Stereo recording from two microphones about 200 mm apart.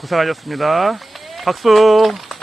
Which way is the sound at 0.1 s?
Centre (ahead or behind).